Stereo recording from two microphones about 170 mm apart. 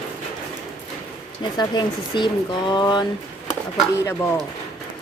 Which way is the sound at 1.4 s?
25° left (ahead or behind).